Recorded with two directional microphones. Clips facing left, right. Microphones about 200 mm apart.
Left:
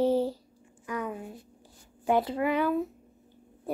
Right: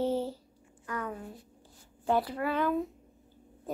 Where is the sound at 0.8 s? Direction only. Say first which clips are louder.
Left 3 dB; 15° left (ahead or behind).